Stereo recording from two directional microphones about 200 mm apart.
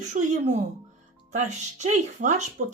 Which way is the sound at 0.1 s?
35° right (ahead or behind).